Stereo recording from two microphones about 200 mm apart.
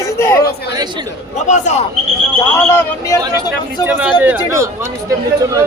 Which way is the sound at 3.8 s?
5° right (ahead or behind).